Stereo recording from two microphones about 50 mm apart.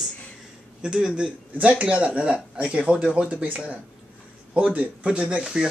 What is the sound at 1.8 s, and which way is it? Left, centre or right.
Speech, right.